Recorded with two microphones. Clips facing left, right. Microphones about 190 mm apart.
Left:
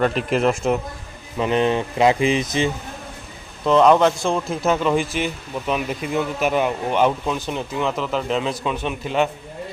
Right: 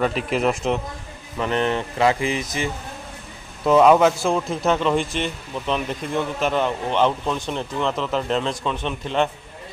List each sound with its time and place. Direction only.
0.0 s a man's voice: centre (ahead or behind)
1.4 s a sound: 15° left (ahead or behind)
3.6 s a man's voice: 5° right (ahead or behind)